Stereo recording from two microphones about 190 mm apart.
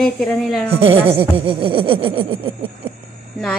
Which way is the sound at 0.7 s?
30° right (ahead or behind).